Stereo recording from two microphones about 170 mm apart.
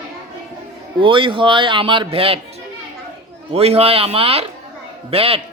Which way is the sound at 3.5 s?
35° right (ahead or behind).